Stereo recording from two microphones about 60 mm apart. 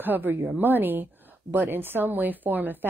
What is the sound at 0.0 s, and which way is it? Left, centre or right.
Speech, right.